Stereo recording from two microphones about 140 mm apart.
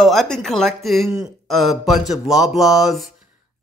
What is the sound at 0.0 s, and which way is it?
Speech, centre (ahead or behind).